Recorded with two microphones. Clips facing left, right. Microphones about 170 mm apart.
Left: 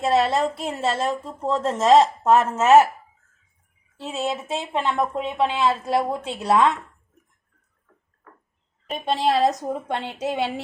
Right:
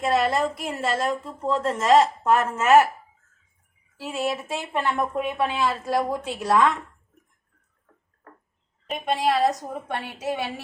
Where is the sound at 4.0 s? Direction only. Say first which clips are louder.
Even; 25° left (ahead or behind).